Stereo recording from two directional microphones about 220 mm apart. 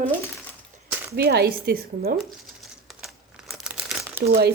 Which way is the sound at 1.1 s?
45° right (ahead or behind).